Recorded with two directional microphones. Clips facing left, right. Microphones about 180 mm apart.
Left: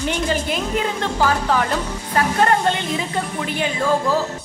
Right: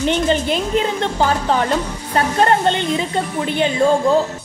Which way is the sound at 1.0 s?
30° right (ahead or behind).